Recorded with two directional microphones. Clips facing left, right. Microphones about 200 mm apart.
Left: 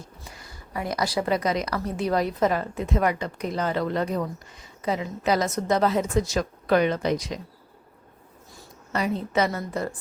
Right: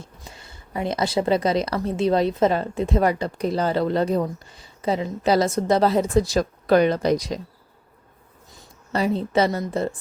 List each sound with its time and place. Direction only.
0.0 s a woman's voice: 25° right (ahead or behind)
8.9 s a woman's voice: 30° right (ahead or behind)